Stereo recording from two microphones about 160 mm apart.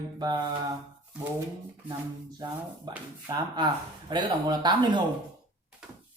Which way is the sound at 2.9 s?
25° right (ahead or behind).